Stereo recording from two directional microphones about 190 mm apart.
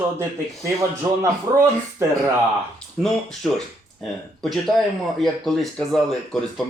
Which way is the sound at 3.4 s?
Centre (ahead or behind).